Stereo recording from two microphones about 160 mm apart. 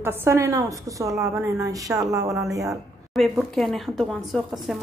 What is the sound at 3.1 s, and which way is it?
Speech, centre (ahead or behind).